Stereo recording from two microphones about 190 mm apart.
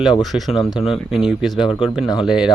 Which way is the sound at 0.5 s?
30° left (ahead or behind).